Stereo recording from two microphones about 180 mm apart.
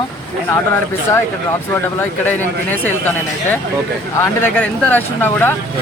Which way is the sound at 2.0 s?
10° left (ahead or behind).